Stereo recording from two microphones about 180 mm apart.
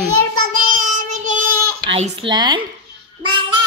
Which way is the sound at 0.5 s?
50° right (ahead or behind).